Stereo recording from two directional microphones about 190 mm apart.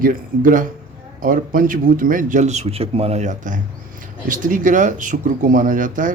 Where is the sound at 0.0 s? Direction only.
45° right (ahead or behind).